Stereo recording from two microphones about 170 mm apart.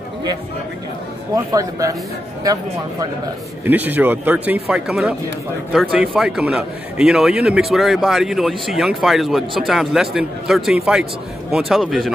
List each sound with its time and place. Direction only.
1.3 s a man's voice: 20° right (ahead or behind)
3.6 s speech: 10° right (ahead or behind)